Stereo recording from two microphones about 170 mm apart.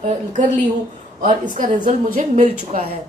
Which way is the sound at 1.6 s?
45° right (ahead or behind).